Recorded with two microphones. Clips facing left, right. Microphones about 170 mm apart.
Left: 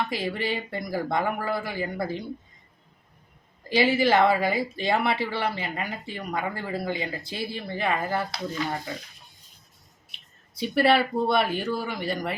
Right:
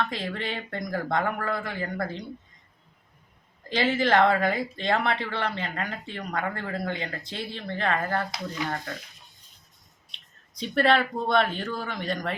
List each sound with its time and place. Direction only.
0.0 s speech: 10° left (ahead or behind)
3.7 s speech: 10° left (ahead or behind)
10.1 s speech: 5° left (ahead or behind)